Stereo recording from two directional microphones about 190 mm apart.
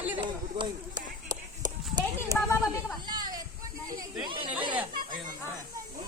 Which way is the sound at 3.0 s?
20° right (ahead or behind).